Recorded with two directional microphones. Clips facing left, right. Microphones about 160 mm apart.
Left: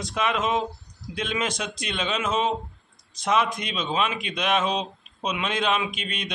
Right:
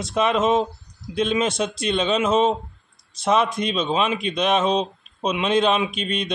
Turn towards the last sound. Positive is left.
turn(degrees=-30)  # may be behind; listen again after turning